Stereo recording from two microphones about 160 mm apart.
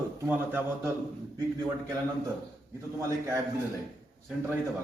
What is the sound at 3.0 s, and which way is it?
Speech, 20° right (ahead or behind).